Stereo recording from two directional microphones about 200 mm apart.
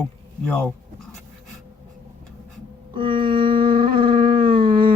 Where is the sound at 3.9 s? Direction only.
25° right (ahead or behind).